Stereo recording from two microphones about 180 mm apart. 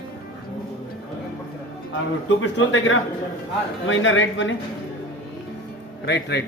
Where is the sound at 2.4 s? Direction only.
90° left.